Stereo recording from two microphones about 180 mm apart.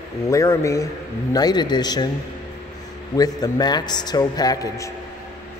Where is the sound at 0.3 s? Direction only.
15° left (ahead or behind).